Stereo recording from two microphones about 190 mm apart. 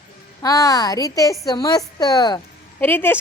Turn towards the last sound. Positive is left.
turn(degrees=10)  # may be behind; listen again after turning